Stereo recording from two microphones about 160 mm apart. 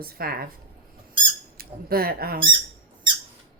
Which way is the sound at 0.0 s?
70° right (ahead or behind).